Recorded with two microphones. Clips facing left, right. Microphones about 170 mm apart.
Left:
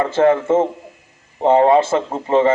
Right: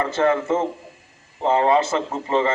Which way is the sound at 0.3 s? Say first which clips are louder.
Left 6 dB; 15° left (ahead or behind).